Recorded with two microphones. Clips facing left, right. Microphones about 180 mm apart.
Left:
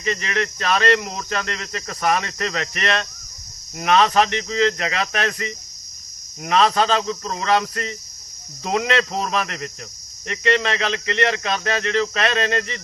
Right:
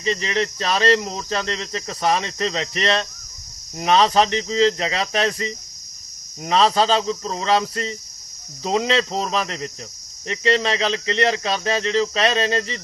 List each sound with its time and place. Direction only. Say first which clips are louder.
0.0 s speech: right 2 dB; 30° right (ahead or behind)